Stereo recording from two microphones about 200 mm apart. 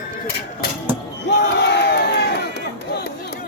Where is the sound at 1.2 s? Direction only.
60° left (ahead or behind).